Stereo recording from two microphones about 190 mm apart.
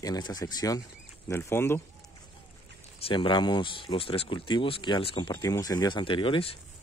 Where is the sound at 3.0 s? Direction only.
25° left (ahead or behind).